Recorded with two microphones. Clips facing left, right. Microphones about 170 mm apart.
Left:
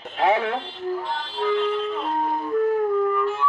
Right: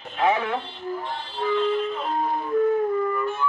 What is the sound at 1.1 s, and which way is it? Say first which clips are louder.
Music: left 2 dB; 90° left.